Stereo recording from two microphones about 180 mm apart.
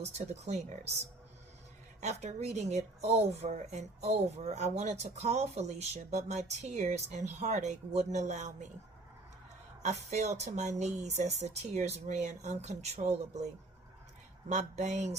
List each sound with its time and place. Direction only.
0.0 s a woman's voice: 40° right (ahead or behind)
2.0 s a woman's voice: 40° right (ahead or behind)
9.8 s a woman's voice: 40° right (ahead or behind)
14.5 s a woman's voice: 40° right (ahead or behind)